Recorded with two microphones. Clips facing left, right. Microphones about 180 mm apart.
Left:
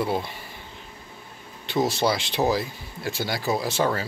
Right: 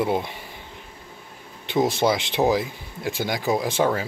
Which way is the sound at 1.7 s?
15° right (ahead or behind).